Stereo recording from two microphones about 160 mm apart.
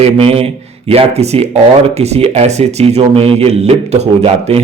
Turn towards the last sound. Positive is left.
turn(degrees=-40)  # may be behind; listen again after turning